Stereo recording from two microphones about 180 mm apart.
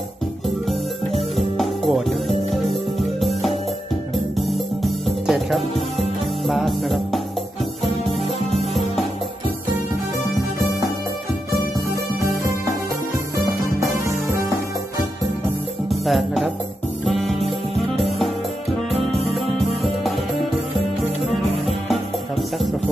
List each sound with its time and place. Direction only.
0.7 s music: centre (ahead or behind)
13.7 s music: 15° right (ahead or behind)
15.9 s music: centre (ahead or behind)